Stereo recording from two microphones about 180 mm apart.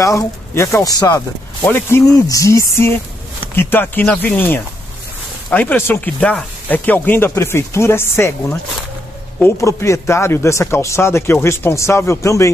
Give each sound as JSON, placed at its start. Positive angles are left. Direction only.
{"t": 0.0, "sound": "speech", "side_deg": 15}
{"t": 9.4, "sound": "speech", "side_deg": 15}